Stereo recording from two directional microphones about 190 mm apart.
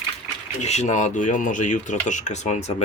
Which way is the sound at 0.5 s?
35° left (ahead or behind).